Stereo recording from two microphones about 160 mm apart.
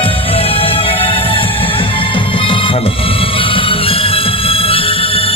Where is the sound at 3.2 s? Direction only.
35° left (ahead or behind).